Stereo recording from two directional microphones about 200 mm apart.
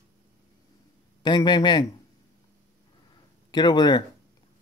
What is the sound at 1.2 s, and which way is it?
Speech, 20° left (ahead or behind).